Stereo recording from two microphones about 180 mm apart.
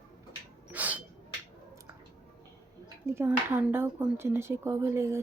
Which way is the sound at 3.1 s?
15° right (ahead or behind).